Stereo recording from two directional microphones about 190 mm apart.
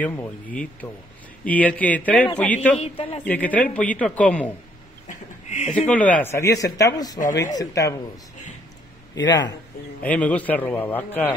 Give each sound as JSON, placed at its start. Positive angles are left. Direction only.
{"t": 0.0, "sound": "speech", "side_deg": 10}
{"t": 2.8, "sound": "a woman's voice", "side_deg": 30}
{"t": 3.3, "sound": "speech", "side_deg": 10}
{"t": 5.0, "sound": "a sound", "side_deg": 40}
{"t": 5.8, "sound": "speech", "side_deg": 5}
{"t": 9.3, "sound": "a woman's voice", "side_deg": 20}
{"t": 10.0, "sound": "speech", "side_deg": 5}